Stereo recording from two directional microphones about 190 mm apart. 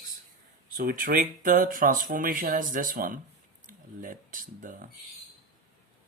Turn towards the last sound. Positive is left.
turn(degrees=-45)  # may be behind; listen again after turning